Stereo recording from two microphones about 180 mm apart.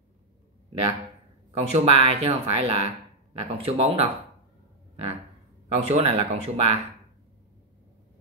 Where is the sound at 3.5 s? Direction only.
35° right (ahead or behind).